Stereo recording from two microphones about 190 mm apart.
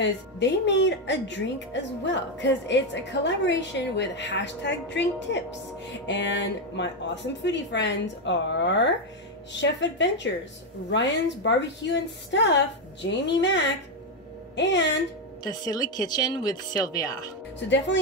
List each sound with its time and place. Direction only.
0.0 s a woman's voice: 65° left (ahead or behind)
15.4 s speech: 20° left (ahead or behind)
17.6 s a woman's voice: 70° left (ahead or behind)